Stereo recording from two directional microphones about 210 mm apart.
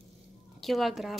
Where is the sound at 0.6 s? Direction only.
Centre (ahead or behind).